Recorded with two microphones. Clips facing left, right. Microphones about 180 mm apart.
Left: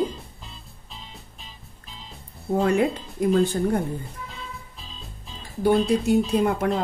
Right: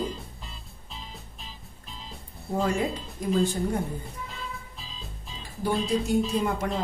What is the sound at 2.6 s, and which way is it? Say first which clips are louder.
Speech: left 5 dB; 60° left (ahead or behind).